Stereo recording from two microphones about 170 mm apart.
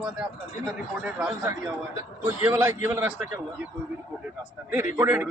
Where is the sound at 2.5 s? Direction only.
20° right (ahead or behind).